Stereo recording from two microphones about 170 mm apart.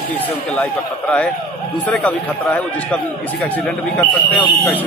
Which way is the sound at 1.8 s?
10° left (ahead or behind).